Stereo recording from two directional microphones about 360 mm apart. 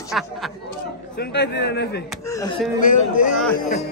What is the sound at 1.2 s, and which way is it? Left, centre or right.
Speech, left.